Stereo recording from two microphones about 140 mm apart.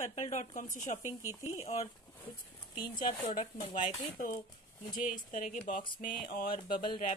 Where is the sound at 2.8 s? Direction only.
30° left (ahead or behind).